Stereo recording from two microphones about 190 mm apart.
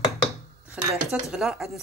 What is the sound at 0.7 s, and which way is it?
Speech, 5° right (ahead or behind).